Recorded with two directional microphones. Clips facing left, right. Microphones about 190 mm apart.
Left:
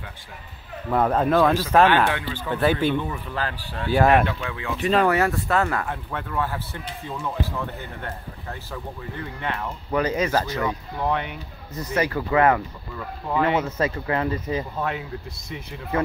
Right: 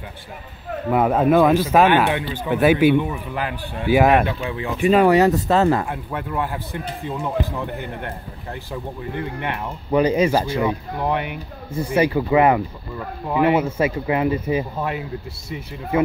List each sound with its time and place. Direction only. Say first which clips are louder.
0.9 s speech: right 3 dB; 10° right (ahead or behind); by 5.9 s 25° right (ahead or behind)
5.9 s speech: right 3 dB; 10° right (ahead or behind)
10.0 s speech: right 5 dB; 10° right (ahead or behind)